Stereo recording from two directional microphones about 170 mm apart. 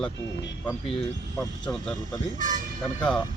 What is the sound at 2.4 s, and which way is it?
Speech, 50° right (ahead or behind).